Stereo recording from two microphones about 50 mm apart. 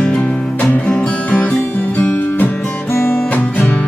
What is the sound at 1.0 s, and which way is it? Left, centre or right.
Music, left.